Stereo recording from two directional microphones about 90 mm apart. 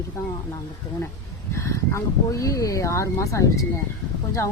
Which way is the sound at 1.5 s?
30° left (ahead or behind).